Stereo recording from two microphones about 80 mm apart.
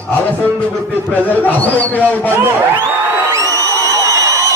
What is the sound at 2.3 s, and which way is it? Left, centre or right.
Speech, right.